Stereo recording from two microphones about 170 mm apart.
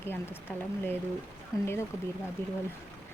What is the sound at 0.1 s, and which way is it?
Speech, 10° left (ahead or behind).